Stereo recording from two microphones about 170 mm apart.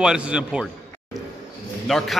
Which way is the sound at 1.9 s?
Centre (ahead or behind).